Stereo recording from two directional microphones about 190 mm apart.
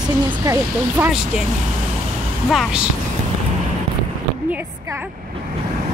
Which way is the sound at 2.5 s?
5° right (ahead or behind).